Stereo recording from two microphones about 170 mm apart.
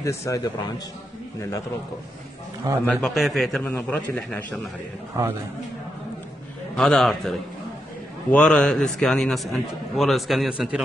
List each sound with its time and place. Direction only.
0.0 s a man's voice: 15° left (ahead or behind)
2.8 s a man's voice: 5° left (ahead or behind)
5.2 s a man's voice: 20° right (ahead or behind)
6.8 s a man's voice: 5° left (ahead or behind)